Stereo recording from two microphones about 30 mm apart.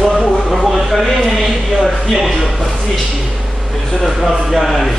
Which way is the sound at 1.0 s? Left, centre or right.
Centre.